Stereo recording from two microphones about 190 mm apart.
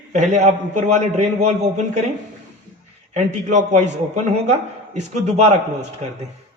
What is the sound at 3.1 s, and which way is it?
Speech, 40° right (ahead or behind).